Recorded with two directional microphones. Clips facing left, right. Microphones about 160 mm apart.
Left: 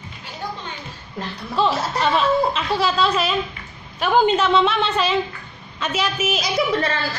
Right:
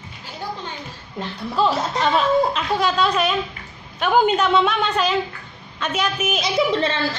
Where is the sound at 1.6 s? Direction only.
Centre (ahead or behind).